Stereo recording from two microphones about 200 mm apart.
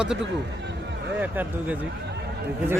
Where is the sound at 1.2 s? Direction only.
10° right (ahead or behind).